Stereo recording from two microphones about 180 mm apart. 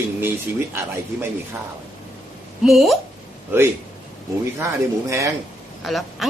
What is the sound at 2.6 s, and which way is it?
Speech, centre (ahead or behind).